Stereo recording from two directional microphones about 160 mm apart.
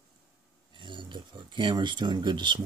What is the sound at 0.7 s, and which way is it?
Speech, 30° right (ahead or behind).